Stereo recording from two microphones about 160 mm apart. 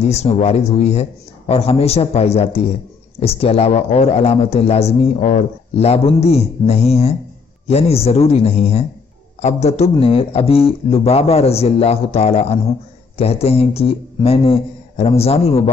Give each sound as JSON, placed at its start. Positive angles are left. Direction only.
{"t": 0.1, "sound": "a man's voice", "side_deg": 40}